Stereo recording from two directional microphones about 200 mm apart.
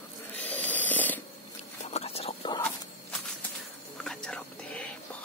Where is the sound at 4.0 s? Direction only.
5° left (ahead or behind).